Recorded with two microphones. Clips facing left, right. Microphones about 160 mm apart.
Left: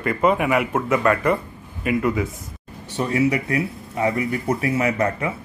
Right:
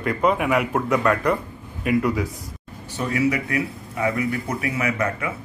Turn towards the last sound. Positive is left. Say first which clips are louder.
# left 3 dB
turn(degrees=30)  # may be behind; listen again after turning